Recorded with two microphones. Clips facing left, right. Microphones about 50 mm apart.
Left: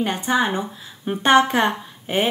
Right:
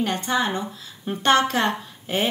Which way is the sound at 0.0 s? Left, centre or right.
Centre.